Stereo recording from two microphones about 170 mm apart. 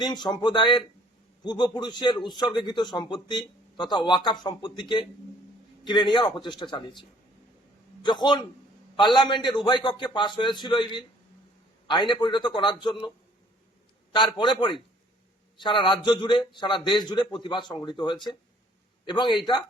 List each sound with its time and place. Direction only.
0.0 s speech: 25° left (ahead or behind)
8.0 s speech: 25° left (ahead or behind)
14.1 s speech: 30° left (ahead or behind)